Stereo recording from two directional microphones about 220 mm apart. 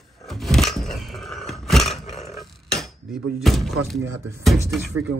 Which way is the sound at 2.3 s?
Centre (ahead or behind).